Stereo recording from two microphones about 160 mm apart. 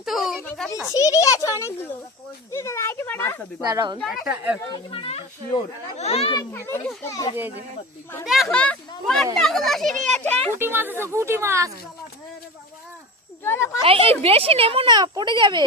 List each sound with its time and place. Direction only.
0.0 s a sound: centre (ahead or behind)
0.9 s a child's voice: 20° left (ahead or behind)
3.7 s speech: 25° right (ahead or behind)
4.0 s speech: centre (ahead or behind)
4.7 s speech: 35° left (ahead or behind)
6.3 s a child's voice: 15° left (ahead or behind)
7.3 s speech: 10° right (ahead or behind)
8.2 s speech: centre (ahead or behind)
10.6 s speech: 15° right (ahead or behind)
13.4 s speech: 15° left (ahead or behind)
13.8 s speech: 35° right (ahead or behind)